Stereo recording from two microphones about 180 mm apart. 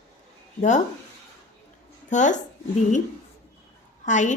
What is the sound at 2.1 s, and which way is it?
Speech, 45° left (ahead or behind).